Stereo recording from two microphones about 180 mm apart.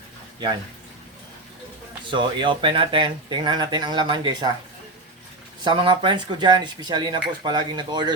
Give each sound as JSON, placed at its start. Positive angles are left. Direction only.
{"t": 2.0, "sound": "speech", "side_deg": -25}
{"t": 5.6, "sound": "speech", "side_deg": -25}